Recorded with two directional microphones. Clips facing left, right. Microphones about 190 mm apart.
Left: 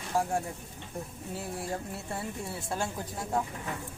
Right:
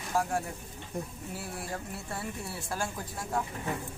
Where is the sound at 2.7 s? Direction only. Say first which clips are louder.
Left 1 dB; 25° left (ahead or behind).